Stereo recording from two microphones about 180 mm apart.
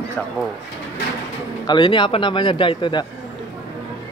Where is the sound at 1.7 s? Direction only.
25° left (ahead or behind).